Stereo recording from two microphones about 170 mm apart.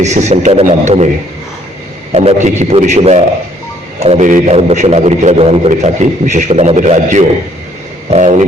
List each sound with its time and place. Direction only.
0.0 s a man's voice: 40° right (ahead or behind)
2.1 s a man's voice: 40° right (ahead or behind)